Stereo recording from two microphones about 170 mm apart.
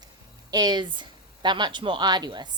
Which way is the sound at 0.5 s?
25° right (ahead or behind).